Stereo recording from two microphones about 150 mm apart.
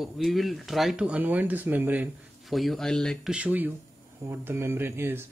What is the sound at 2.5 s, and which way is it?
Speech, centre (ahead or behind).